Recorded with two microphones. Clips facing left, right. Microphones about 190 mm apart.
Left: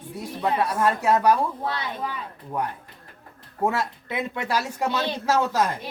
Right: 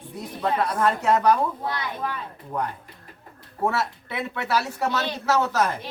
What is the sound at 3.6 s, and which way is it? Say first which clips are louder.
Speech: even; 15° left (ahead or behind).